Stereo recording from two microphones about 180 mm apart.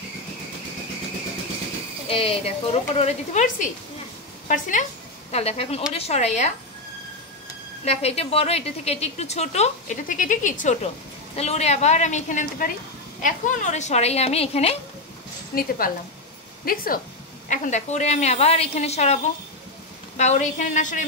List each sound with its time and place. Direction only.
2.0 s a woman's voice: 35° left (ahead or behind)
7.8 s a woman's voice: 35° left (ahead or behind)
15.5 s a woman's voice: 60° left (ahead or behind)
17.5 s a woman's voice: 40° left (ahead or behind)